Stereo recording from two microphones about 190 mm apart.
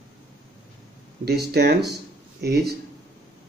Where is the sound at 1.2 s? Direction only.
60° right (ahead or behind).